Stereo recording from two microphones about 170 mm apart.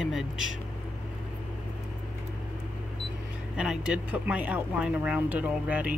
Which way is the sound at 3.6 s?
5° right (ahead or behind).